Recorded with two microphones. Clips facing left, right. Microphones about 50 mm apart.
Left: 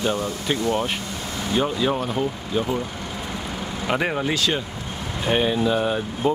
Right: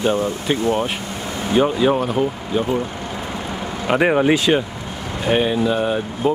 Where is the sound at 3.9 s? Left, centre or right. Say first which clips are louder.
Right 8 dB; right.